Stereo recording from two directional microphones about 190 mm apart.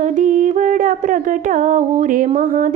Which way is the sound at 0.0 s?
40° right (ahead or behind).